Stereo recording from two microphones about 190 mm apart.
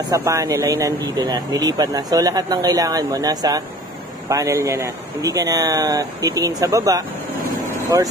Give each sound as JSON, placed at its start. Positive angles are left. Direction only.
{"t": 0.1, "sound": "speech", "side_deg": -15}
{"t": 7.5, "sound": "vehicle", "side_deg": -20}